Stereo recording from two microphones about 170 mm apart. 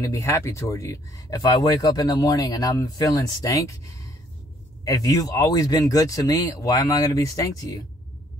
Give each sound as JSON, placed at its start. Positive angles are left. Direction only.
{"t": 0.0, "sound": "speech", "side_deg": 20}